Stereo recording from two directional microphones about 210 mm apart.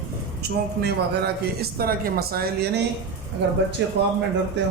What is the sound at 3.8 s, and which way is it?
Speech, 60° right (ahead or behind).